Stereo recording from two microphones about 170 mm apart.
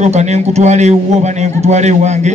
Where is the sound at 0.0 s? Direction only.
40° right (ahead or behind).